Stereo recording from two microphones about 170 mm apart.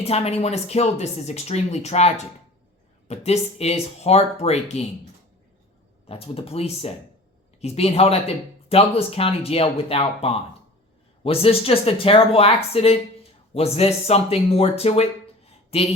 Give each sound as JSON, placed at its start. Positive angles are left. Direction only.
{"t": 0.0, "sound": "speech", "side_deg": 35}
{"t": 6.1, "sound": "speech", "side_deg": 35}